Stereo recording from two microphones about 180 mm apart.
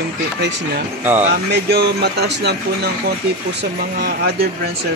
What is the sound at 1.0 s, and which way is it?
Speech, 10° right (ahead or behind).